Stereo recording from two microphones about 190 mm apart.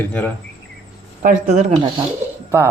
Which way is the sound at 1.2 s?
35° right (ahead or behind).